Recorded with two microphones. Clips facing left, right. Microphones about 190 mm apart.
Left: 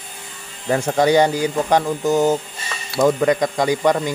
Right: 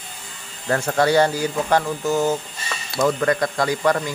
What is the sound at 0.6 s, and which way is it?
Speech, 15° left (ahead or behind).